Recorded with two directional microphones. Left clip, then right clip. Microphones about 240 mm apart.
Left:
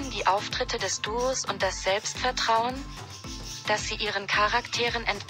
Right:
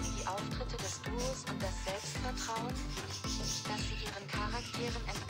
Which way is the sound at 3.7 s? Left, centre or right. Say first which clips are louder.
Left 13 dB; left.